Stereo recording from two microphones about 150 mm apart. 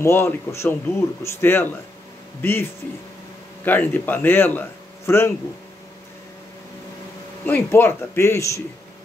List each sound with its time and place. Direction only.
0.0 s speech: 15° left (ahead or behind)
7.4 s speech: 15° left (ahead or behind)